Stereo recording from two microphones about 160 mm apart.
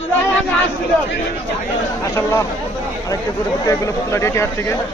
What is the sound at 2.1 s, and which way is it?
Speech, 15° left (ahead or behind).